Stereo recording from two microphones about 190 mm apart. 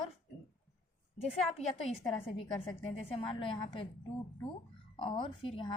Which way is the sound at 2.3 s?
30° left (ahead or behind).